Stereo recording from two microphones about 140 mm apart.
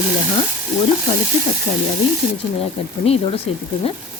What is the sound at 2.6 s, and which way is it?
Speech, 45° left (ahead or behind).